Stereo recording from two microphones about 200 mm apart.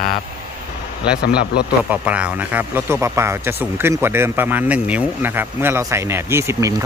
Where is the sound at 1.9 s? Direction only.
5° right (ahead or behind).